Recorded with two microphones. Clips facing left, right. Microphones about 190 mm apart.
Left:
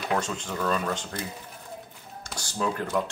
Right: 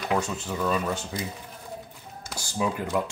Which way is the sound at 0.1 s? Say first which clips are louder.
Right 1 dB; 5° right (ahead or behind).